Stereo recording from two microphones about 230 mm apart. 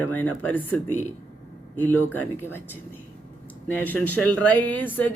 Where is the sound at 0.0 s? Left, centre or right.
Centre.